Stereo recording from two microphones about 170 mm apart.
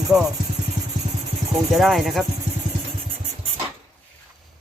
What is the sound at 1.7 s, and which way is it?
Speech, centre (ahead or behind).